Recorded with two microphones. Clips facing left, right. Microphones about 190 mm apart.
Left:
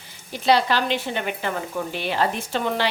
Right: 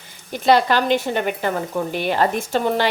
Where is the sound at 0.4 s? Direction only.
50° right (ahead or behind).